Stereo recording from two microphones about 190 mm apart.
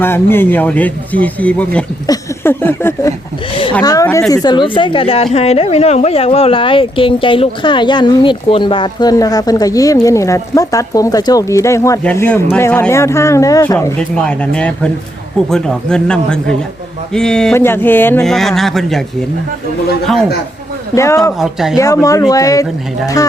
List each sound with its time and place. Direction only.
0.0 s a woman's voice: 10° left (ahead or behind)
20.9 s speech: 15° left (ahead or behind)
21.3 s speech: centre (ahead or behind)
22.0 s speech: 15° left (ahead or behind)